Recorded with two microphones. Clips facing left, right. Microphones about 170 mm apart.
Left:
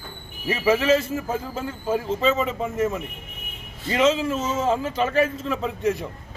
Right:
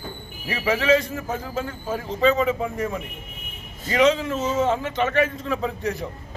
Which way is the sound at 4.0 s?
5° left (ahead or behind).